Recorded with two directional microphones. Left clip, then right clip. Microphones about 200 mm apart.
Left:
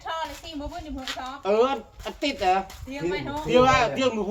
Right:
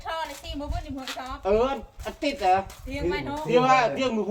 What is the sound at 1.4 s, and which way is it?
A man's voice, 45° left (ahead or behind).